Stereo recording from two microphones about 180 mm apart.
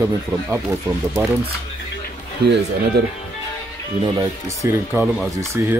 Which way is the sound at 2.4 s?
65° right (ahead or behind).